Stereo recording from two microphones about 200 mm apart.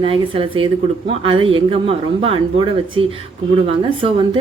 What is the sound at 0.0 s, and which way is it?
A woman's voice, 25° right (ahead or behind).